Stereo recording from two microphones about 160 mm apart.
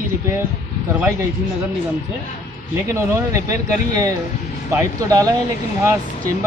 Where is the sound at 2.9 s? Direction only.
20° right (ahead or behind).